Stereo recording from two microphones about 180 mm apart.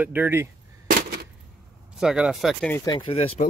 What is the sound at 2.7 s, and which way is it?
Speech, 20° left (ahead or behind).